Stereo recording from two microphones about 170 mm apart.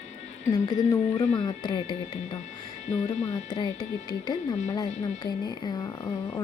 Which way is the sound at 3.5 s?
25° left (ahead or behind).